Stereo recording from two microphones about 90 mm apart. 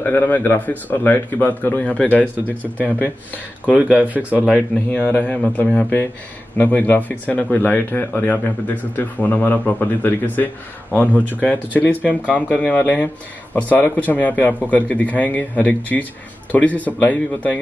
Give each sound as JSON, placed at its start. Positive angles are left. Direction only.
{"t": 0.0, "sound": "speech", "side_deg": 25}
{"t": 3.6, "sound": "speech", "side_deg": -15}
{"t": 4.9, "sound": "speech", "side_deg": 20}
{"t": 12.7, "sound": "speech", "side_deg": 20}